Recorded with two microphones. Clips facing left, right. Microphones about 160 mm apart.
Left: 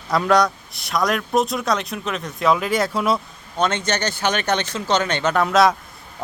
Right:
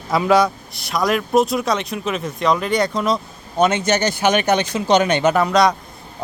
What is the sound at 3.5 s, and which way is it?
Speech, 10° right (ahead or behind).